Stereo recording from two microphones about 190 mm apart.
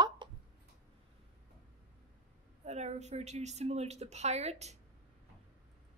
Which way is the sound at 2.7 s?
35° right (ahead or behind).